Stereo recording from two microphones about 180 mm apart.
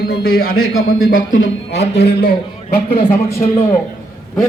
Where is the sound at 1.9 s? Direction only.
65° left (ahead or behind).